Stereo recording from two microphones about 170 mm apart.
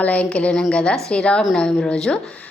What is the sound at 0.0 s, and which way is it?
A woman's voice, 10° left (ahead or behind).